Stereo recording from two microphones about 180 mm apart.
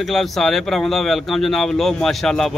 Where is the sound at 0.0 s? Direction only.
Centre (ahead or behind).